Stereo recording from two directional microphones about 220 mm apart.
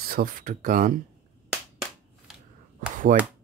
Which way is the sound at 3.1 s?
35° right (ahead or behind).